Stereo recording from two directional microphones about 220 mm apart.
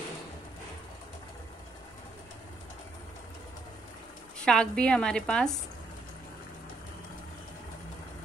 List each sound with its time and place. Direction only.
4.5 s a woman's voice: 5° left (ahead or behind)